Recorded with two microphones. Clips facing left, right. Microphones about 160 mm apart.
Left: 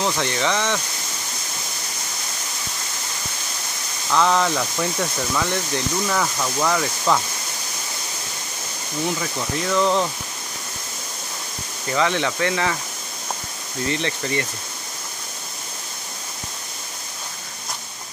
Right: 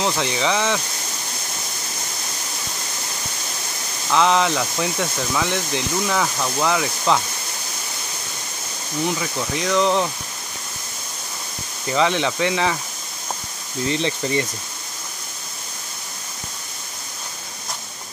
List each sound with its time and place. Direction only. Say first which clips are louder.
0.0 s speech: right 1 dB; centre (ahead or behind)
4.1 s speech: right 1 dB; centre (ahead or behind)
9.2 s speech: right 1 dB; 5° left (ahead or behind)
11.9 s speech: right 2 dB; 15° right (ahead or behind)
13.8 s speech: right 2 dB; 20° right (ahead or behind)